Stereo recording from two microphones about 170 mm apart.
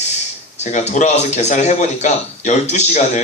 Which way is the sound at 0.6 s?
40° left (ahead or behind).